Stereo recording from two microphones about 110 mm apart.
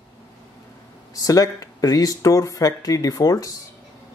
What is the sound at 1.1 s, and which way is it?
Speech, 35° left (ahead or behind).